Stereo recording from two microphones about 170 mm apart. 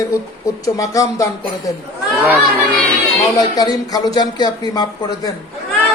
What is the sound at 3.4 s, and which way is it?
Speech, 25° left (ahead or behind).